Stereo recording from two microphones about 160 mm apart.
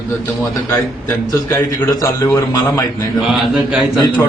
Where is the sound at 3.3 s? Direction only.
Centre (ahead or behind).